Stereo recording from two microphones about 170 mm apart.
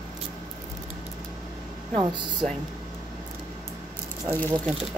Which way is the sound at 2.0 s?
25° right (ahead or behind).